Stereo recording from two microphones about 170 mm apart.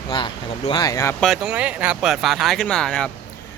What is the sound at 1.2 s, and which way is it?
Speech, centre (ahead or behind).